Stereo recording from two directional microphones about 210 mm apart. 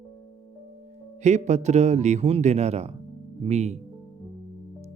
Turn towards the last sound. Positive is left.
turn(degrees=-30)  # may be behind; listen again after turning